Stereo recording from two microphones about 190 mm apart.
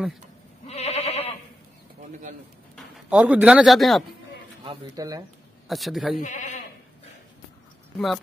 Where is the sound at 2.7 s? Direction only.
5° right (ahead or behind).